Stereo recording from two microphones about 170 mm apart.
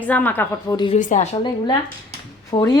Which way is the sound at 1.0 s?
50° left (ahead or behind).